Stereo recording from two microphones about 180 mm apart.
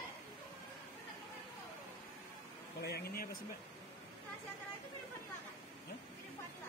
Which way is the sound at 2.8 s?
60° left (ahead or behind).